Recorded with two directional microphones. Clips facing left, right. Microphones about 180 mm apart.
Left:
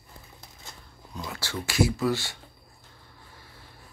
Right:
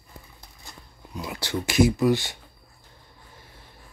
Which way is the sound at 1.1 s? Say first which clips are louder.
Right 5 dB; 10° right (ahead or behind).